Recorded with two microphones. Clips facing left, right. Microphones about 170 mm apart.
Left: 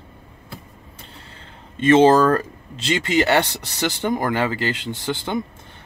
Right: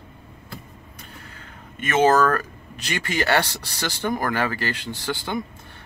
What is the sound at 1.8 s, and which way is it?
Speech, 30° left (ahead or behind).